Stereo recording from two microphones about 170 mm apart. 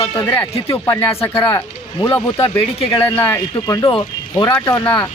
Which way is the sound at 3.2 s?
15° left (ahead or behind).